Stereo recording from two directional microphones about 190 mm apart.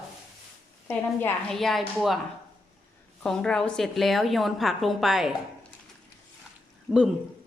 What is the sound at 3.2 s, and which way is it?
A woman's voice, 5° left (ahead or behind).